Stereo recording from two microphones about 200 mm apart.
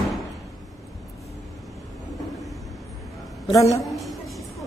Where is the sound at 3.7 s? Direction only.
Centre (ahead or behind).